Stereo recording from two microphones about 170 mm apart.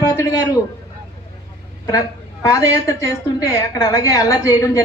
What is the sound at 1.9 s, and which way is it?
A woman's voice, 20° left (ahead or behind).